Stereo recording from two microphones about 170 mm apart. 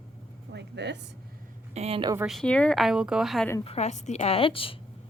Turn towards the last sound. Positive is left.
turn(degrees=30)  # may be behind; listen again after turning